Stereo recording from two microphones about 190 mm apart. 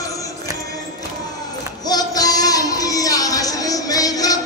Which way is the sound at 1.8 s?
20° left (ahead or behind).